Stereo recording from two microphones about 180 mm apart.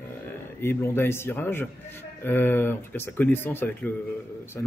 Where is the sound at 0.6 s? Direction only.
15° left (ahead or behind).